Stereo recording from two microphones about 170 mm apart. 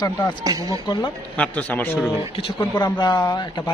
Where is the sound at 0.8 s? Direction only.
25° left (ahead or behind).